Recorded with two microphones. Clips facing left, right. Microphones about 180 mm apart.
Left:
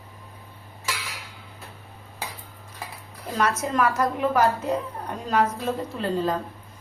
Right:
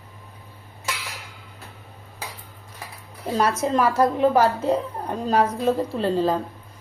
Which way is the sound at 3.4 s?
30° right (ahead or behind).